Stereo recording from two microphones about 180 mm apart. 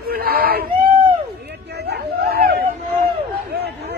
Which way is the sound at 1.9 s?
60° right (ahead or behind).